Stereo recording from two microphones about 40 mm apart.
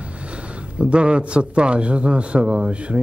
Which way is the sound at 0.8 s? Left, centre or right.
Right.